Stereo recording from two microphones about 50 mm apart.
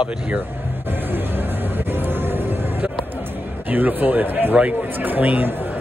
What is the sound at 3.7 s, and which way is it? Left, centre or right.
Speech, right.